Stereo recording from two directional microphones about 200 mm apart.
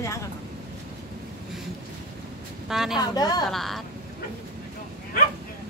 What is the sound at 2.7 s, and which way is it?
Speech, centre (ahead or behind).